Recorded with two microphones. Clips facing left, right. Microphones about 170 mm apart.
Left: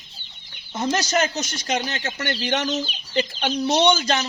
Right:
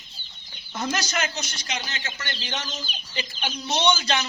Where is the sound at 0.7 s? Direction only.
30° left (ahead or behind).